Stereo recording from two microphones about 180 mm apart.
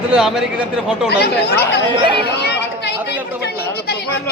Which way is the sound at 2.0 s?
25° right (ahead or behind).